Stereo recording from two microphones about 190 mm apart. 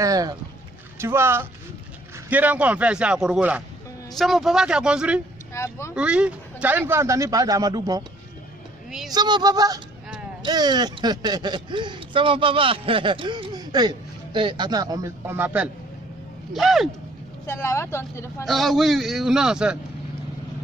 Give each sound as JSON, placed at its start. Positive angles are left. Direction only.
{"t": 0.0, "sound": "a man's voice", "side_deg": -20}
{"t": 5.5, "sound": "vehicle", "side_deg": 15}
{"t": 5.9, "sound": "a man's voice", "side_deg": -5}
{"t": 9.1, "sound": "a man's voice", "side_deg": -20}
{"t": 17.5, "sound": "speech", "side_deg": 15}
{"t": 18.4, "sound": "a man's voice", "side_deg": 0}